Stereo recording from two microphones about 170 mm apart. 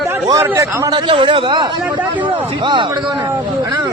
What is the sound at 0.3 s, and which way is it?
A man's voice, 20° right (ahead or behind).